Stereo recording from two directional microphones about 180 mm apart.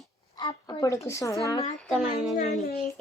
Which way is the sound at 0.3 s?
25° left (ahead or behind).